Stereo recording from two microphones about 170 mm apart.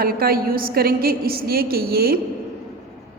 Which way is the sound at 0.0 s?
60° right (ahead or behind).